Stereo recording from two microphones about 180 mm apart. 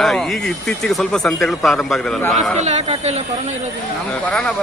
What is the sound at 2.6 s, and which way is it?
Speech, 40° right (ahead or behind).